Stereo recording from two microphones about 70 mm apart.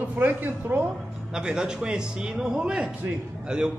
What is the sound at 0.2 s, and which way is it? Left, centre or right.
Speech, right.